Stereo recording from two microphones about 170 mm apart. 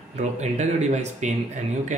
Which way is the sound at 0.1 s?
40° right (ahead or behind).